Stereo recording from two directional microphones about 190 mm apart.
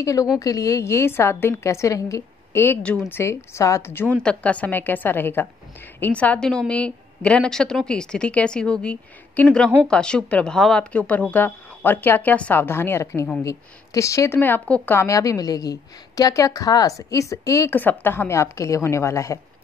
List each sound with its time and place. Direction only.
0.0 s a woman's voice: 15° left (ahead or behind)